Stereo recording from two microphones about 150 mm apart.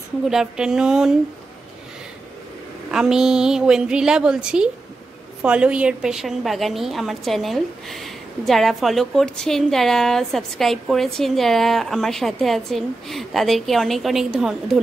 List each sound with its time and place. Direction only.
0.3 s a woman's voice: 5° right (ahead or behind)
2.9 s a woman's voice: 5° right (ahead or behind)